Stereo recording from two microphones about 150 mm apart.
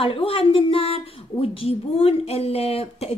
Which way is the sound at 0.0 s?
40° left (ahead or behind).